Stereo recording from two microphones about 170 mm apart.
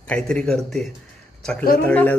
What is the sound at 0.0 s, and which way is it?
Mantra, 5° left (ahead or behind).